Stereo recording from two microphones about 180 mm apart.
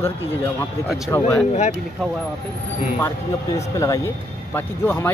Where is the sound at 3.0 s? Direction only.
15° left (ahead or behind).